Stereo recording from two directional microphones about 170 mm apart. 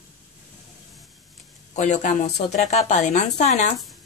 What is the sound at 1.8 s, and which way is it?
A woman's voice, 45° left (ahead or behind).